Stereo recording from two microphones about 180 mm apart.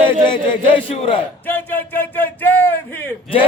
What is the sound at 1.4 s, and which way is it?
A man's voice, 10° left (ahead or behind).